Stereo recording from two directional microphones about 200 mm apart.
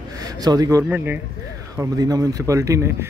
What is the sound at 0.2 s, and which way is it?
A man's voice, 20° right (ahead or behind).